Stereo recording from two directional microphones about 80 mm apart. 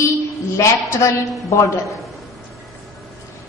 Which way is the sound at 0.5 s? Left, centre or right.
Left.